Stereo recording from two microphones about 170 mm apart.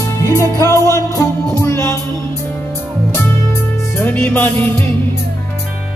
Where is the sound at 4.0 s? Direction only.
10° left (ahead or behind).